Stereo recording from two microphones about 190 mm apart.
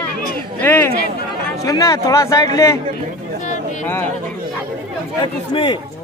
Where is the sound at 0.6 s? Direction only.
10° left (ahead or behind).